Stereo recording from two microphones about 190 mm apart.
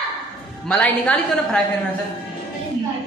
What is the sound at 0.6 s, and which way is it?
Speech, 5° left (ahead or behind).